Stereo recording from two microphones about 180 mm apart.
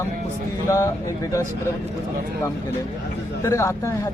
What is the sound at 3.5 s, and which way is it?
Speech, 15° left (ahead or behind).